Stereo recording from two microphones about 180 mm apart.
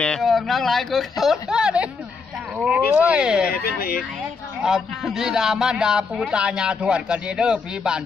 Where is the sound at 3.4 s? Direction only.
55° left (ahead or behind).